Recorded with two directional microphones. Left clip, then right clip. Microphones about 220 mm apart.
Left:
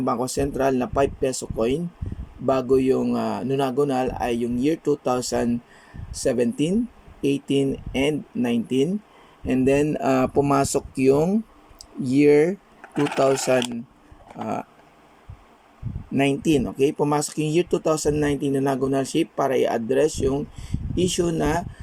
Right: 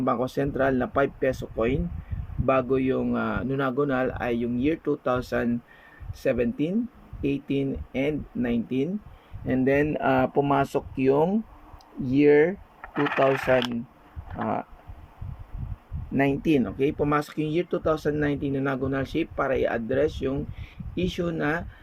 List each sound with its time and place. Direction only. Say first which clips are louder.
0.0 s speech: left 2 dB; 10° left (ahead or behind)
16.1 s speech: left 2 dB; 10° left (ahead or behind)